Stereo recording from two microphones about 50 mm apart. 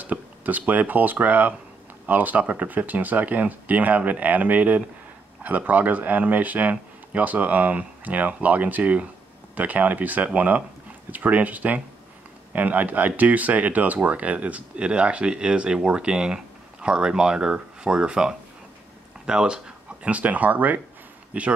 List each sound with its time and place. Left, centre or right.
0.0 s speech: right